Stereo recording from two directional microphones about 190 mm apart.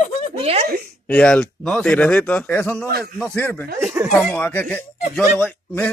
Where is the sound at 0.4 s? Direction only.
30° right (ahead or behind).